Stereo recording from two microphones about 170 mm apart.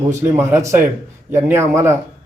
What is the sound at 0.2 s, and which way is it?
Speech, 15° right (ahead or behind).